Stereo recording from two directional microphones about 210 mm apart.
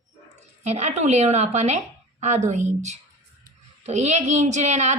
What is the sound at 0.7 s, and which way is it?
A woman's voice, 35° right (ahead or behind).